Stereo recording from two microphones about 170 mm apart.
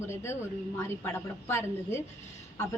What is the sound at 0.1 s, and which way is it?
Speech, 15° left (ahead or behind).